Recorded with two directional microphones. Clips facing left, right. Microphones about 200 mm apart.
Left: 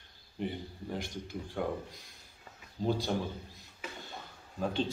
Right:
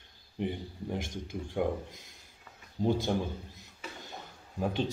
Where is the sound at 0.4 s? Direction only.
20° right (ahead or behind).